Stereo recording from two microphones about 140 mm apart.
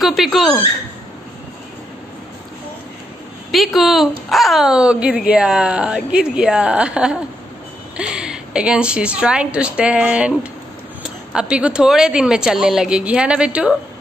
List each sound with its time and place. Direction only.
0.0 s speech: centre (ahead or behind)
3.5 s a woman's voice: centre (ahead or behind)
11.3 s a woman's voice: 5° right (ahead or behind)